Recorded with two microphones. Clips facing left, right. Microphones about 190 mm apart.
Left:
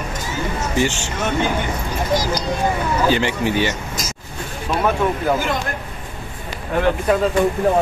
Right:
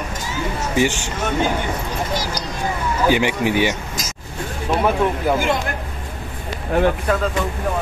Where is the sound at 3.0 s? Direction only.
15° right (ahead or behind).